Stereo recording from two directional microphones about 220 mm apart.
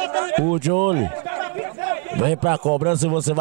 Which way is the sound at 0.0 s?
20° right (ahead or behind).